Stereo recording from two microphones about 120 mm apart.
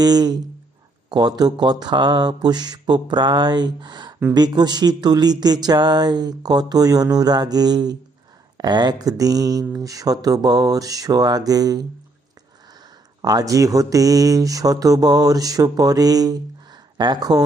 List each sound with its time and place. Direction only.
0.0 s speech: 35° right (ahead or behind)
13.2 s speech: 30° right (ahead or behind)